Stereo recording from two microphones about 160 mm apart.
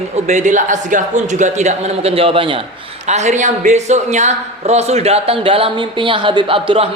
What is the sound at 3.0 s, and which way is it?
A man's voice, 45° right (ahead or behind).